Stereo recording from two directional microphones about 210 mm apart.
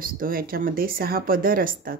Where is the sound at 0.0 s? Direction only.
45° right (ahead or behind).